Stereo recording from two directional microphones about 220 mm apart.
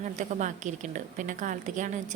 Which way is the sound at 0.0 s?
35° right (ahead or behind).